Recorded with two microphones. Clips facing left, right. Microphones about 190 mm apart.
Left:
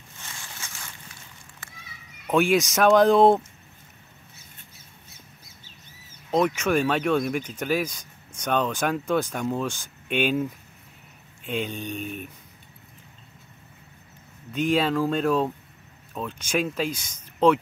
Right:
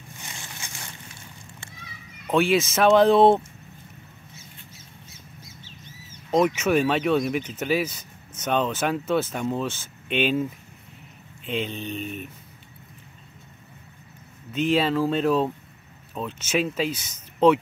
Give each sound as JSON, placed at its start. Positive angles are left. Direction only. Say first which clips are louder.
{"t": 0.2, "sound": "a sound", "louder": "even", "side_deg": -15}
{"t": 2.2, "sound": "speech", "louder": "even", "side_deg": 0}
{"t": 6.3, "sound": "speech", "louder": "right 2 dB", "side_deg": -5}
{"t": 14.5, "sound": "speech", "louder": "right 1 dB", "side_deg": 0}